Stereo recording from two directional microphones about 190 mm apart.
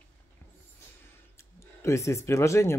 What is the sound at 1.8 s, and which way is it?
Speech, 15° left (ahead or behind).